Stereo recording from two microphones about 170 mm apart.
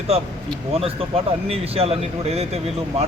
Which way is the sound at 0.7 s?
35° right (ahead or behind).